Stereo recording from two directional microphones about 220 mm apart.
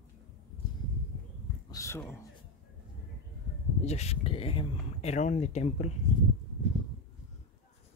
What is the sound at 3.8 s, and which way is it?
Speech, 30° left (ahead or behind).